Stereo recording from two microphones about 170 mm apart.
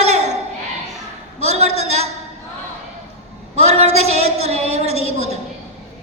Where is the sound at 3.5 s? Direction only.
40° right (ahead or behind).